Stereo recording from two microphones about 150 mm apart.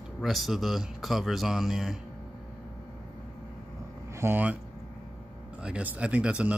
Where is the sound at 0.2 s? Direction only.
Centre (ahead or behind).